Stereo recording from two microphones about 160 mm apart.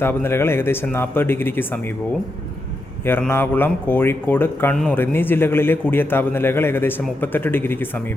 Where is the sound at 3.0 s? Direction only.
15° left (ahead or behind).